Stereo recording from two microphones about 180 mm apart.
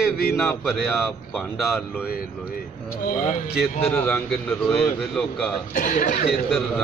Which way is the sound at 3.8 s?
10° left (ahead or behind).